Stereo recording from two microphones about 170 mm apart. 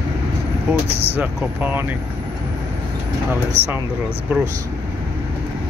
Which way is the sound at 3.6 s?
40° right (ahead or behind).